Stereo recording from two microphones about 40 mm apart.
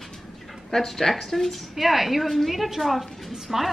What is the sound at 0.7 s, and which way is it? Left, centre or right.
Speech, centre.